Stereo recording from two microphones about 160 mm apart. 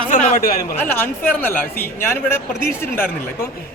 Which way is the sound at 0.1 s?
55° left (ahead or behind).